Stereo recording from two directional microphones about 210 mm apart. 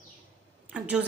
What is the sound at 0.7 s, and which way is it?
Speech, 5° right (ahead or behind).